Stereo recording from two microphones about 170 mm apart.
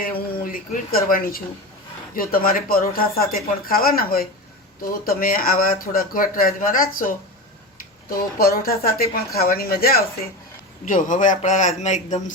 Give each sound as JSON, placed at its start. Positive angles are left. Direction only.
{"t": 0.0, "sound": "speech", "side_deg": 60}
{"t": 8.1, "sound": "speech", "side_deg": 60}
{"t": 10.8, "sound": "a man's voice", "side_deg": 50}